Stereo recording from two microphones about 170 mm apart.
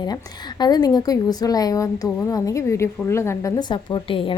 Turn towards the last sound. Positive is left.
turn(degrees=30)  # may be behind; listen again after turning